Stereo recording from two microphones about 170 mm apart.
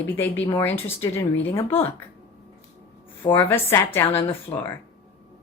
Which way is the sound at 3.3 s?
10° left (ahead or behind).